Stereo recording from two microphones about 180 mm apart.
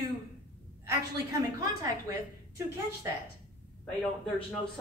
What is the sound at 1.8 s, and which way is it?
A woman's voice, 15° right (ahead or behind).